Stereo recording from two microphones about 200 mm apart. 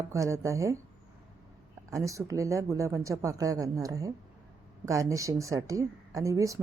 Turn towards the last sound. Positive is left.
turn(degrees=-15)  # may be behind; listen again after turning